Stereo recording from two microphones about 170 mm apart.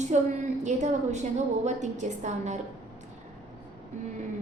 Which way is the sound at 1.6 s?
45° right (ahead or behind).